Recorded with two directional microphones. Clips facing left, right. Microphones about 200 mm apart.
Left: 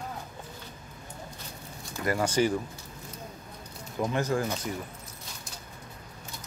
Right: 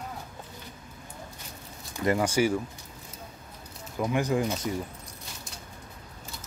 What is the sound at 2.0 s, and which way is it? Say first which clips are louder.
Speech: right 3 dB; 25° right (ahead or behind).